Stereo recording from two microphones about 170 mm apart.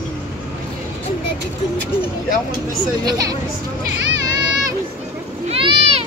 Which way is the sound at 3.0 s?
25° right (ahead or behind).